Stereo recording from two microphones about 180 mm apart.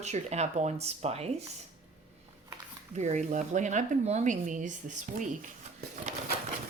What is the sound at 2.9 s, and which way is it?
Speech, 40° right (ahead or behind).